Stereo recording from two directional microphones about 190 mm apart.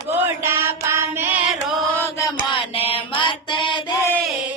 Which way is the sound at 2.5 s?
30° left (ahead or behind).